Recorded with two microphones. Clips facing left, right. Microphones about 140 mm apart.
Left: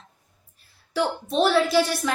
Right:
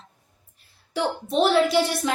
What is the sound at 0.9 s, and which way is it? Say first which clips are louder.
A woman's voice: even; 20° right (ahead or behind).